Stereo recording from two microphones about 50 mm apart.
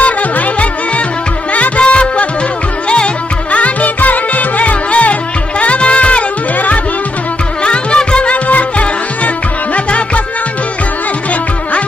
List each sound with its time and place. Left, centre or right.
0.0 s music: left
3.5 s music: left